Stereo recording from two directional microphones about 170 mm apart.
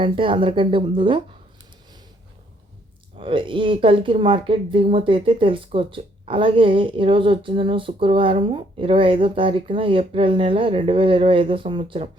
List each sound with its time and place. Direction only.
0.0 s speech: 30° right (ahead or behind)
3.2 s speech: 30° right (ahead or behind)